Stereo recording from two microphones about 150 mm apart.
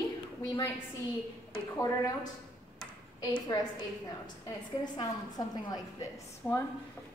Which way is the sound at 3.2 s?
25° left (ahead or behind).